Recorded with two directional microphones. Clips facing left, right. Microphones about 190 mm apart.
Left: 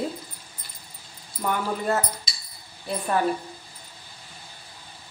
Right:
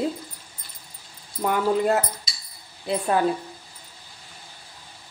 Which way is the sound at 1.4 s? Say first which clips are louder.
Right 5 dB; 20° right (ahead or behind).